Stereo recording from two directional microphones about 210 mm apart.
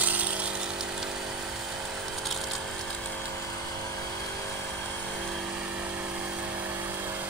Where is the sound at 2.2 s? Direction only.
Centre (ahead or behind).